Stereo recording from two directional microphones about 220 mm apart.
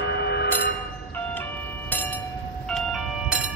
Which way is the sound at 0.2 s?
50° left (ahead or behind).